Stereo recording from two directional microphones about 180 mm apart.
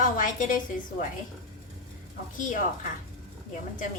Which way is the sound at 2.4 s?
45° left (ahead or behind).